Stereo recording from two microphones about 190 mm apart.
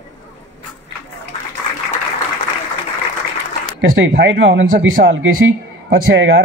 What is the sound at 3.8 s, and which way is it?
Speech, 80° right.